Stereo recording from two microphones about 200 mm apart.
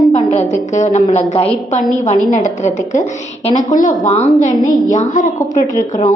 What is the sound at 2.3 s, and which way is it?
A woman's voice, 40° left (ahead or behind).